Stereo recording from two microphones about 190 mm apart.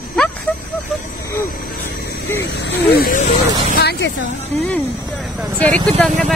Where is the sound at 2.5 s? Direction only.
65° left (ahead or behind).